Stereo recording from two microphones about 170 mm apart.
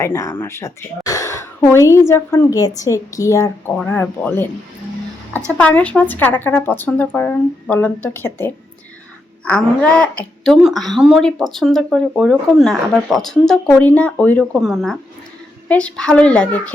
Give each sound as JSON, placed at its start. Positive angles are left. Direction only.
{"t": 0.0, "sound": "speech", "side_deg": 15}
{"t": 5.5, "sound": "a woman's voice", "side_deg": 10}